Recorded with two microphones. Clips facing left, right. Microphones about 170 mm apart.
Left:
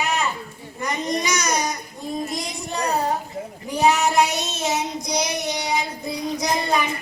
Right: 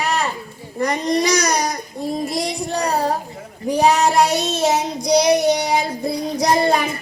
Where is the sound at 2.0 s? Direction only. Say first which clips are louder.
Right 5 dB; 35° right (ahead or behind).